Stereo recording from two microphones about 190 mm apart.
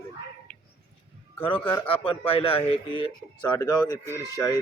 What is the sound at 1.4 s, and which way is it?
A man's voice, 30° left (ahead or behind).